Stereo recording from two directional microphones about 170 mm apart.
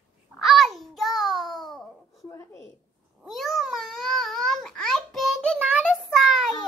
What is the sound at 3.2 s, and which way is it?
Babbling, centre (ahead or behind).